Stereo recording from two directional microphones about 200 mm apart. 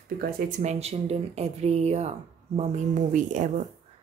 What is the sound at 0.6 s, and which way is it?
Speech, 35° right (ahead or behind).